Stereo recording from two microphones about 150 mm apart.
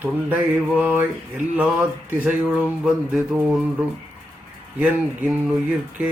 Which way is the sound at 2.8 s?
Centre (ahead or behind).